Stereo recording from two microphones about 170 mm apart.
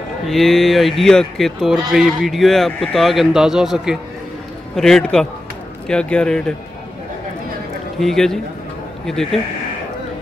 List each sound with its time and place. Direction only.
0.3 s speech: centre (ahead or behind)
8.0 s speech: centre (ahead or behind)